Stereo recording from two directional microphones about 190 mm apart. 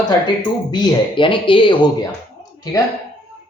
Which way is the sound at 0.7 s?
25° left (ahead or behind).